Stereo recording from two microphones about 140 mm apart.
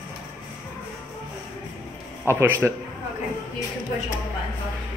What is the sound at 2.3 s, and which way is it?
Speech, 15° right (ahead or behind).